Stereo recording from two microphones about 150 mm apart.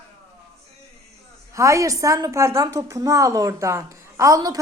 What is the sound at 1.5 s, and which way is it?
Speech, 20° right (ahead or behind).